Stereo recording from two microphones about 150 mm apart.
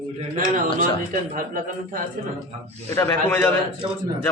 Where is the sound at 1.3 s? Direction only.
60° right (ahead or behind).